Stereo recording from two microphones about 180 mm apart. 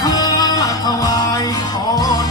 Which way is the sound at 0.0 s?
20° left (ahead or behind).